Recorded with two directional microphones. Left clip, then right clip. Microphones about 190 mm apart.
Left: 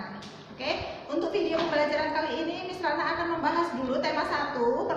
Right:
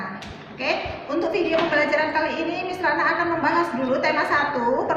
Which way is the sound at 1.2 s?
5° left (ahead or behind).